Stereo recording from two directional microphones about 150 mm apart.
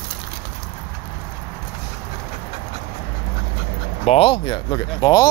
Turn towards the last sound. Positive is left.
turn(degrees=25)  # may be behind; listen again after turning